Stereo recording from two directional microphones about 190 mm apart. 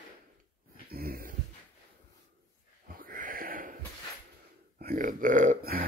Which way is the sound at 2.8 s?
50° right (ahead or behind).